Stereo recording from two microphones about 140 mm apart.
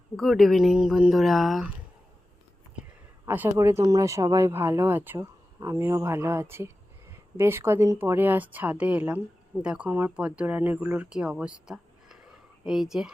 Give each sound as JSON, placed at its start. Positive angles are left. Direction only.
{"t": 0.2, "sound": "speech", "side_deg": 0}
{"t": 3.2, "sound": "speech", "side_deg": -15}